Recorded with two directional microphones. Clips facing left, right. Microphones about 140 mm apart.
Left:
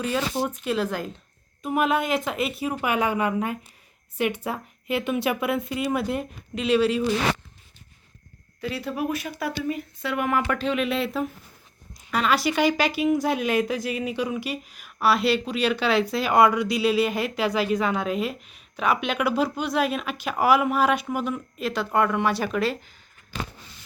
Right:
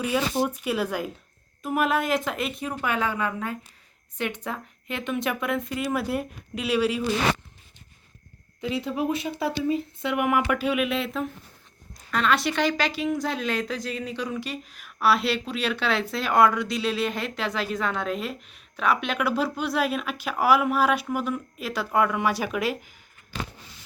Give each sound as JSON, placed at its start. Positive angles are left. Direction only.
{"t": 0.0, "sound": "a woman's voice", "side_deg": -10}
{"t": 8.6, "sound": "a woman's voice", "side_deg": -20}